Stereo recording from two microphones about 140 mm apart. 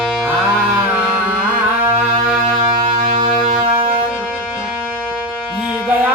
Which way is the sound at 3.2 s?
35° right (ahead or behind).